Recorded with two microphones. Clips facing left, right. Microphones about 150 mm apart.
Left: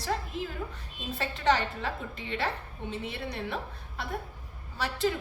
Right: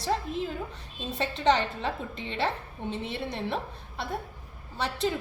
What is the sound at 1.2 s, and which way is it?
A woman's voice, 20° right (ahead or behind).